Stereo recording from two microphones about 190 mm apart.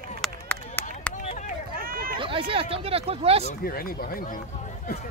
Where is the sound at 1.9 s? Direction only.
50° right (ahead or behind).